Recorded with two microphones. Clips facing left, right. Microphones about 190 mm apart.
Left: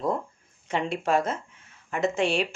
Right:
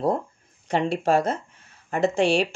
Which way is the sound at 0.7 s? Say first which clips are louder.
Right 4 dB; 35° right (ahead or behind).